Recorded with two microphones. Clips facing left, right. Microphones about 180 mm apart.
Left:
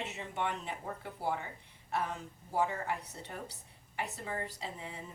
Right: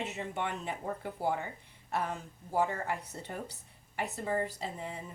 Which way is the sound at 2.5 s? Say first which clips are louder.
Right 2 dB; 50° right (ahead or behind).